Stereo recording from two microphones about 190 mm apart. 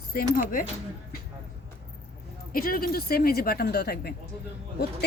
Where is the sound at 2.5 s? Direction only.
50° left (ahead or behind).